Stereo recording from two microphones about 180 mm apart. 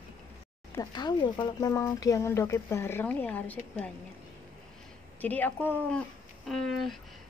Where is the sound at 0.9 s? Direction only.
25° left (ahead or behind); by 3.9 s 10° left (ahead or behind).